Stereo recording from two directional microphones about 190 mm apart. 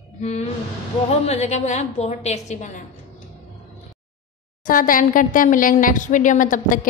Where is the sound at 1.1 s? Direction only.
35° left (ahead or behind).